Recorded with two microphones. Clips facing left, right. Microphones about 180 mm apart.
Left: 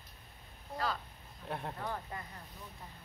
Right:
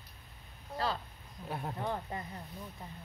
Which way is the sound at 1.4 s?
5° right (ahead or behind).